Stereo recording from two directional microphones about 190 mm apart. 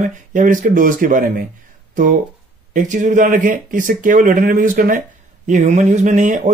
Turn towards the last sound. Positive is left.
turn(degrees=-40)  # may be behind; listen again after turning